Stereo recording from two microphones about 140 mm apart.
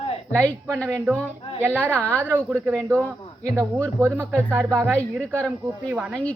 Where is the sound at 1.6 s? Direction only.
10° right (ahead or behind).